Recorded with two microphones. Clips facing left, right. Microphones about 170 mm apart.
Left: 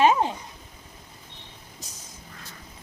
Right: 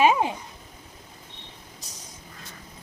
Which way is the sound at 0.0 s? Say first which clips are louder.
Even; 10° right (ahead or behind).